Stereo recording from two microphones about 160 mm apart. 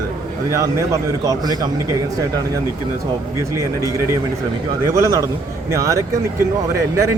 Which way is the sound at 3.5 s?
20° right (ahead or behind).